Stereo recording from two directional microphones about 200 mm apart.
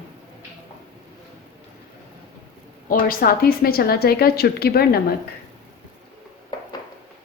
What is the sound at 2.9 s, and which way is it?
A woman's voice, 45° left (ahead or behind).